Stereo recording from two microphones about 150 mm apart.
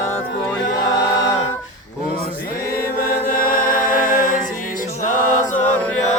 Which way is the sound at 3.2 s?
70° left (ahead or behind).